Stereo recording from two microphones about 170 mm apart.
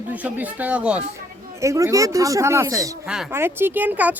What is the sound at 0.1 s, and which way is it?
Speech, 10° right (ahead or behind).